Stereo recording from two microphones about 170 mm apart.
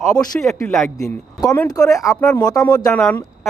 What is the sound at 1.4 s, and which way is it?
Speech, 20° left (ahead or behind).